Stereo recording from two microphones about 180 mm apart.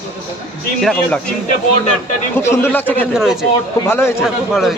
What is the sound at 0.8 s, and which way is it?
Speech, centre (ahead or behind).